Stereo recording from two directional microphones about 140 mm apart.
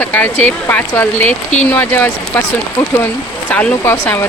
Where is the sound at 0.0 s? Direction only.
15° left (ahead or behind).